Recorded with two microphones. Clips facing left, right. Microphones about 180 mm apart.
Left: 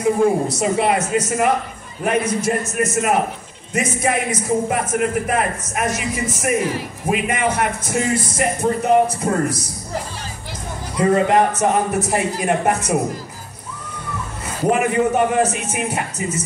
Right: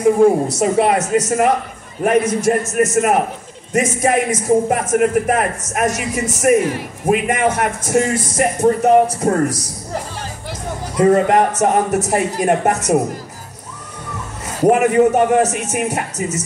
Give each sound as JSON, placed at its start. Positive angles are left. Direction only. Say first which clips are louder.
{"t": 0.0, "sound": "a man's voice", "louder": "right 4 dB", "side_deg": -45}
{"t": 11.0, "sound": "a man's voice", "louder": "right 3 dB", "side_deg": -45}
{"t": 14.6, "sound": "speech", "louder": "right 5 dB", "side_deg": -45}